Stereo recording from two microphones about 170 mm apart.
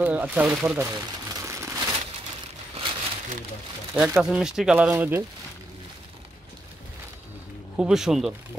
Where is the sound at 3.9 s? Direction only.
5° right (ahead or behind).